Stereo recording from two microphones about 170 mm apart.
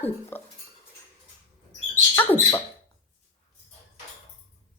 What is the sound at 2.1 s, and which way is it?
Speech, 15° left (ahead or behind).